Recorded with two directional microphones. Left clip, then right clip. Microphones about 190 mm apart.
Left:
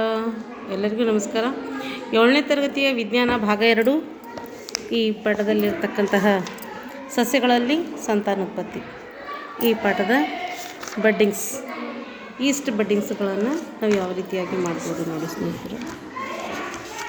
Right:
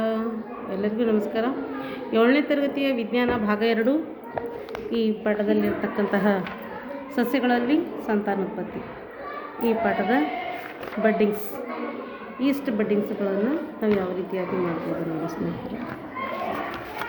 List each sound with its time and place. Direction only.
0.0 s a sound: 35° left (ahead or behind)
0.7 s speech: 35° left (ahead or behind)
7.2 s speech: 35° left (ahead or behind)
9.6 s speech: 35° left (ahead or behind)
12.4 s speech: 35° left (ahead or behind)